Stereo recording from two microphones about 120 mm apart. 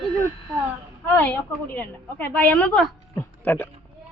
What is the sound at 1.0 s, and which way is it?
A man's voice, 15° left (ahead or behind).